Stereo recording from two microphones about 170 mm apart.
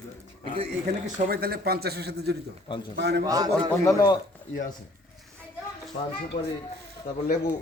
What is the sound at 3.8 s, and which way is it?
Speech, 25° left (ahead or behind).